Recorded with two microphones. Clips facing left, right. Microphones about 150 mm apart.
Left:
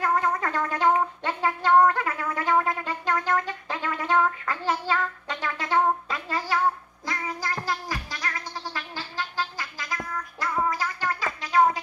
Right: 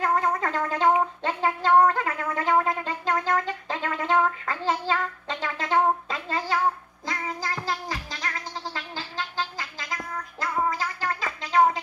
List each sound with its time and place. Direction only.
0.0 s gargling: 25° right (ahead or behind)
1.2 s speech: 30° right (ahead or behind)
7.1 s music: 25° right (ahead or behind)
8.7 s a sound: 25° right (ahead or behind)
10.4 s music: 25° right (ahead or behind)